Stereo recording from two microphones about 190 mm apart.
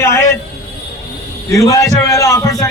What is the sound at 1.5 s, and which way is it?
A man's voice, 15° left (ahead or behind).